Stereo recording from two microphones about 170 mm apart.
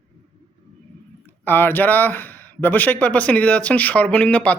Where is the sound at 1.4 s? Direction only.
10° left (ahead or behind).